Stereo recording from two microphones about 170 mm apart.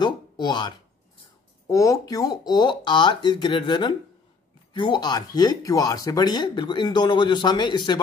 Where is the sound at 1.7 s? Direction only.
20° left (ahead or behind).